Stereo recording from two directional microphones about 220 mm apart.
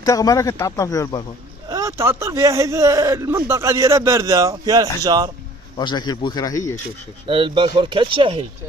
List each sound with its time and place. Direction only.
0.0 s speech: 15° left (ahead or behind)
1.7 s a man's voice: 15° right (ahead or behind)
5.8 s speech: 20° left (ahead or behind)
7.2 s speech: 25° right (ahead or behind)